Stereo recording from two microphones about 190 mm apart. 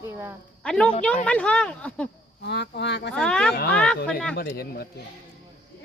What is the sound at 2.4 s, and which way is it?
Speech, 65° left (ahead or behind).